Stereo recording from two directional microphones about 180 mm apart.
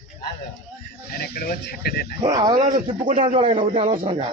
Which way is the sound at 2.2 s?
25° right (ahead or behind).